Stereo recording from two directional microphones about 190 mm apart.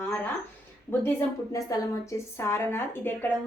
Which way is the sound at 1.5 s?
15° left (ahead or behind).